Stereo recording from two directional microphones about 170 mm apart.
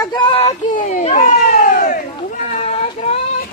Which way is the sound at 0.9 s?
45° left (ahead or behind).